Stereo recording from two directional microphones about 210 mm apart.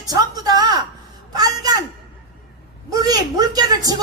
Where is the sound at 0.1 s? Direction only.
20° right (ahead or behind).